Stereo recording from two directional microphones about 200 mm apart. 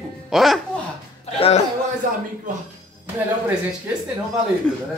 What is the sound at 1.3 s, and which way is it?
Speech, 30° left (ahead or behind).